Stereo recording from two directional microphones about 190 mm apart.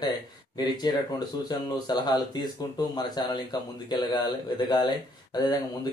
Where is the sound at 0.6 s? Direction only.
20° left (ahead or behind).